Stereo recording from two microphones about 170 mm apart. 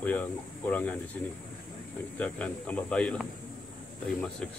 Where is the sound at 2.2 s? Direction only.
5° left (ahead or behind).